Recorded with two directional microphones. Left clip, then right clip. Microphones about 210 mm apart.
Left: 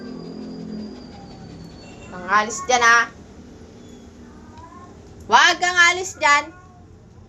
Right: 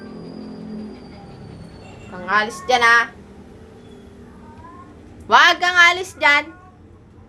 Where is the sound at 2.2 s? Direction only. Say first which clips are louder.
Even; 10° right (ahead or behind).